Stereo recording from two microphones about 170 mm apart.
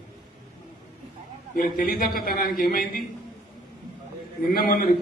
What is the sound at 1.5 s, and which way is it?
A man's voice, 55° left (ahead or behind).